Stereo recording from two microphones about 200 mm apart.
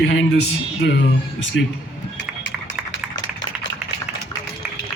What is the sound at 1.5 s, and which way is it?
Speech, 75° left (ahead or behind).